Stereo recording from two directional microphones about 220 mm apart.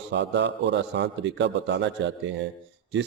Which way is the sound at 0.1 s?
55° right (ahead or behind).